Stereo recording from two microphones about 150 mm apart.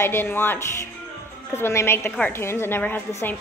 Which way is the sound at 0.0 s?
15° left (ahead or behind).